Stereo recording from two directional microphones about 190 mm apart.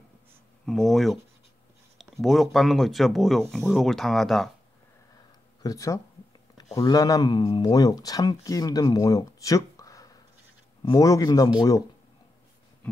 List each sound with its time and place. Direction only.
0.7 s speech: centre (ahead or behind)
5.6 s speech: 20° left (ahead or behind)
12.8 s a sound: 5° left (ahead or behind)